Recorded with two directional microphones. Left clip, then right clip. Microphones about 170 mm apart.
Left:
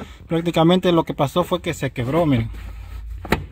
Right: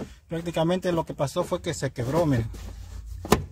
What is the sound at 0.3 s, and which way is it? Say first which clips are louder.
Speech: left 9 dB; 35° left (ahead or behind).